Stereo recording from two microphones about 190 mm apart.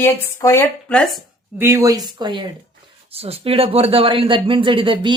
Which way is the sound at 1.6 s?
15° right (ahead or behind).